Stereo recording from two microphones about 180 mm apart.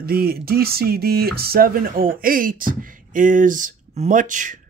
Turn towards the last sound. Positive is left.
turn(degrees=-45)  # may be behind; listen again after turning